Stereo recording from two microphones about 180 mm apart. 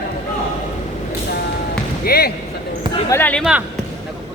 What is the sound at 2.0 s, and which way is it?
Speech, 60° left (ahead or behind).